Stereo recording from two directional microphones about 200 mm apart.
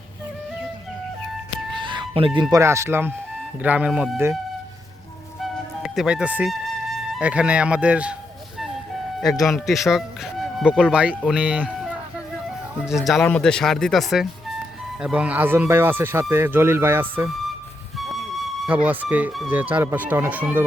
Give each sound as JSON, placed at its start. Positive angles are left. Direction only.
{"t": 1.7, "sound": "speech", "side_deg": -25}
{"t": 5.4, "sound": "music", "side_deg": -5}
{"t": 7.1, "sound": "speech", "side_deg": -5}
{"t": 9.5, "sound": "speech", "side_deg": 0}
{"t": 17.9, "sound": "music", "side_deg": 0}
{"t": 18.6, "sound": "speech", "side_deg": -5}